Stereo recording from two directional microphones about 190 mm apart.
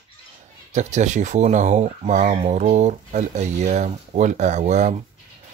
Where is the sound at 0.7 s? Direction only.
40° right (ahead or behind).